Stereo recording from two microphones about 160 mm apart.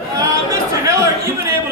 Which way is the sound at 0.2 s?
20° right (ahead or behind).